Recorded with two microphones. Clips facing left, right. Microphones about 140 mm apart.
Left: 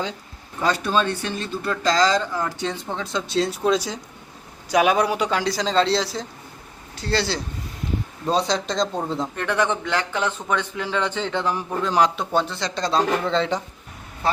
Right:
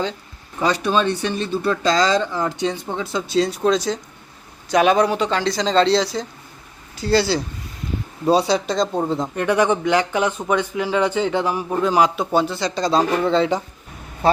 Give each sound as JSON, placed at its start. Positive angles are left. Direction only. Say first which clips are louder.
{"t": 0.7, "sound": "speech", "louder": "right 2 dB", "side_deg": -15}